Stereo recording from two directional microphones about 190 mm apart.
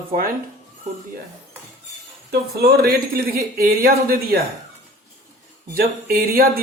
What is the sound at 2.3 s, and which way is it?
Speech, 55° right (ahead or behind).